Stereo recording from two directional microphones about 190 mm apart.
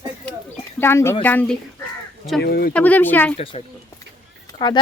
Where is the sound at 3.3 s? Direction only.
30° left (ahead or behind).